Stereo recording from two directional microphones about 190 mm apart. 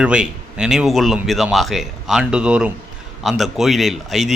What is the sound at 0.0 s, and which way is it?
A man's voice, 5° right (ahead or behind).